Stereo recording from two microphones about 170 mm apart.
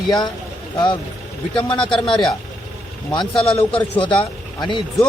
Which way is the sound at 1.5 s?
30° left (ahead or behind).